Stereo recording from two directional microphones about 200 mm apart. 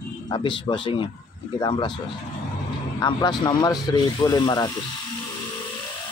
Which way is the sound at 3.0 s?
20° left (ahead or behind).